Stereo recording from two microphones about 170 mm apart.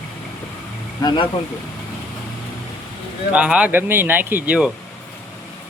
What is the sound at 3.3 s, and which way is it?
Speech, 5° right (ahead or behind).